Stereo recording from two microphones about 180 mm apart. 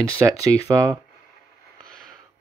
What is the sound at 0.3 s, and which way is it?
Speech, 20° right (ahead or behind).